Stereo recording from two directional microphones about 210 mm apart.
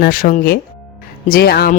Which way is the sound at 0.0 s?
45° left (ahead or behind).